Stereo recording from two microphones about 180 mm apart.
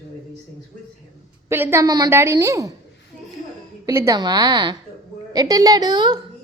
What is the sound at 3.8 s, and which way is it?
A woman's voice, 15° right (ahead or behind).